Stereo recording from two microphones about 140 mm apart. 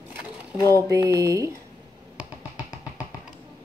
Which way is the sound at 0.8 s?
20° right (ahead or behind).